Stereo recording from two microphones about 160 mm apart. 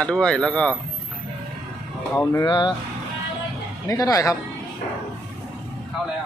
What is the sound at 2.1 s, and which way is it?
Speech, 15° left (ahead or behind).